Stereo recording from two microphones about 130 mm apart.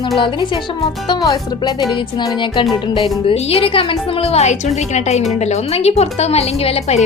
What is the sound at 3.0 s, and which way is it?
A woman's voice, 50° left (ahead or behind).